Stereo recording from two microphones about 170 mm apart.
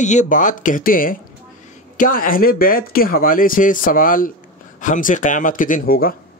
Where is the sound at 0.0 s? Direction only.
45° left (ahead or behind).